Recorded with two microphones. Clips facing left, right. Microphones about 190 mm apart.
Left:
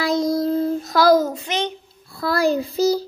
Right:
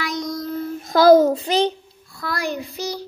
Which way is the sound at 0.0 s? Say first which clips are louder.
Left 7 dB; 30° left (ahead or behind).